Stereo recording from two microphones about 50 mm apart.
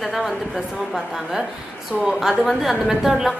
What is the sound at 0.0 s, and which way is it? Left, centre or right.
Speech, centre.